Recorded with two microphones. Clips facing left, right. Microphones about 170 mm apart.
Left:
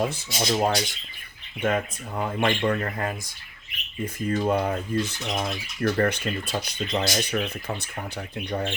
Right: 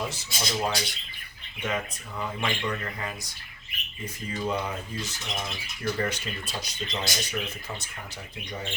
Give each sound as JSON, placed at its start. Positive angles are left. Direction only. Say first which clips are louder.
{"t": 0.0, "sound": "speech", "louder": "left 7 dB", "side_deg": 50}